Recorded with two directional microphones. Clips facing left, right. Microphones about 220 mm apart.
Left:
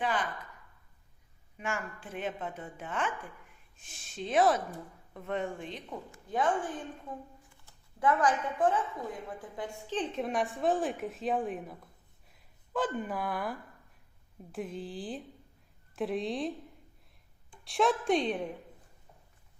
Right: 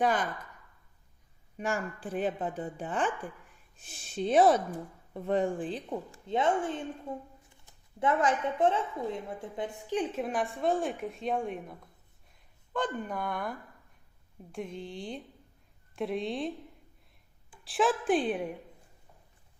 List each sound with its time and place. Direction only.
0.0 s speech: 45° right (ahead or behind)
1.5 s speech: 35° right (ahead or behind)
3.9 s a woman's voice: centre (ahead or behind)
5.1 s a woman's voice: 30° right (ahead or behind); by 18.4 s 5° right (ahead or behind)